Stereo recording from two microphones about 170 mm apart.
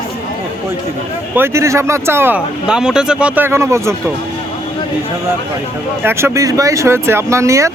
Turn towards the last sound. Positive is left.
turn(degrees=-15)  # may be behind; listen again after turning